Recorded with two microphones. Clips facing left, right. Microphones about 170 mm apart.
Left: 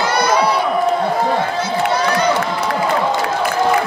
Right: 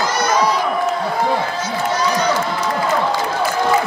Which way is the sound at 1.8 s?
60° left (ahead or behind).